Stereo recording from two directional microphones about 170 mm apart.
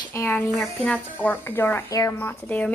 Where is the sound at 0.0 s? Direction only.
15° left (ahead or behind).